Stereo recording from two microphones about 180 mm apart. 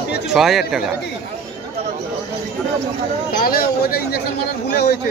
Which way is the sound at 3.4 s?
55° left (ahead or behind).